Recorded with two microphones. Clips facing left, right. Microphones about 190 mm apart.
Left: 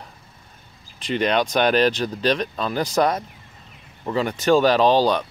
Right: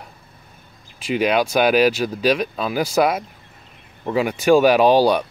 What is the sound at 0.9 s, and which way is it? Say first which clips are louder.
Speech: right 2 dB; 10° right (ahead or behind).